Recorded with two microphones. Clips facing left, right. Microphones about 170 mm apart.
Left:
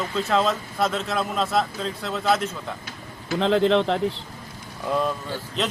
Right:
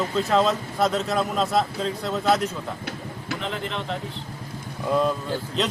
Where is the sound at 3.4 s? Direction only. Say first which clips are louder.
Left 14 dB; 90° left.